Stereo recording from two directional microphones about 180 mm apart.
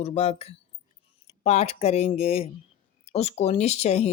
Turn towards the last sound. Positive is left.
turn(degrees=35)  # may be behind; listen again after turning